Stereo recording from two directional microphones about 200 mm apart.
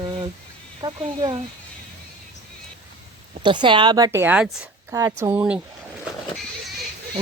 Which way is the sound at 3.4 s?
25° right (ahead or behind).